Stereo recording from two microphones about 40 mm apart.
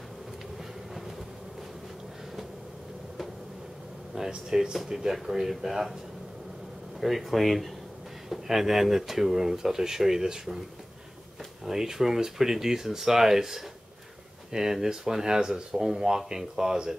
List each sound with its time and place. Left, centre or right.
4.3 s speech: centre
7.0 s speech: centre
11.6 s speech: centre